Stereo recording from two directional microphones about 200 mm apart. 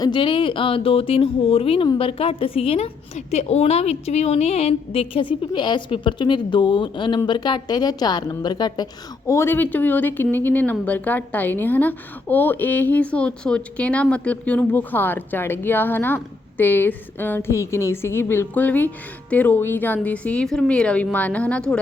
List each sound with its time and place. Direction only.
0.0 s a woman's voice: 25° left (ahead or behind); by 21.8 s 5° left (ahead or behind)